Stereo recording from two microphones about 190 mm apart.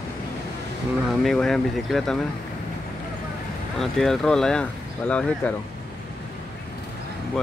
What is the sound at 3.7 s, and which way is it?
Speech, centre (ahead or behind).